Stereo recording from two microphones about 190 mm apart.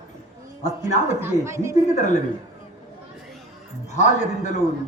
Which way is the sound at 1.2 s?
15° right (ahead or behind).